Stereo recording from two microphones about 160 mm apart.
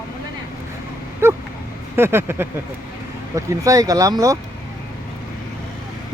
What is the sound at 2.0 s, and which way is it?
Speech, 15° right (ahead or behind).